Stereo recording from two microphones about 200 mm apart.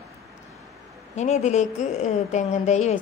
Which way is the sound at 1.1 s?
35° left (ahead or behind).